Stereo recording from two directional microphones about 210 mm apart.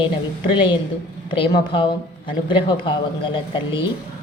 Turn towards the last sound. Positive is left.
turn(degrees=25)  # may be behind; listen again after turning